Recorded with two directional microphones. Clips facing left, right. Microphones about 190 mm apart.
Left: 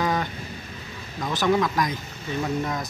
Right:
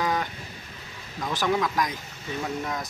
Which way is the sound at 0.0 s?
10° right (ahead or behind).